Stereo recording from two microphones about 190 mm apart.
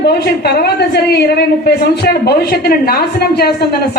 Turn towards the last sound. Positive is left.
turn(degrees=55)  # may be behind; listen again after turning